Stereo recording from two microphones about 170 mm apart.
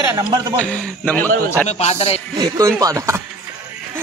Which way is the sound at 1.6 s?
40° left (ahead or behind).